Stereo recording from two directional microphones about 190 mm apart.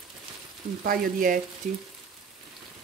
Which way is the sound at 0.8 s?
45° right (ahead or behind).